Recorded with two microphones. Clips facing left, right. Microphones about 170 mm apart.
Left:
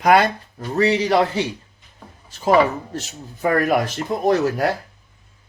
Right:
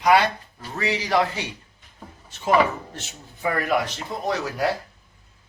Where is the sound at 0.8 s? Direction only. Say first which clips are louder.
Left 5 dB; 30° left (ahead or behind).